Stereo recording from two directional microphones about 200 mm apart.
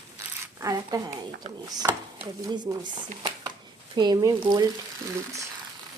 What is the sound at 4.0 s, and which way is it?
Speech, 20° right (ahead or behind).